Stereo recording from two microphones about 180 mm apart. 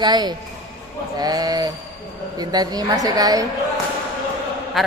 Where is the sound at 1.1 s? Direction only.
20° right (ahead or behind).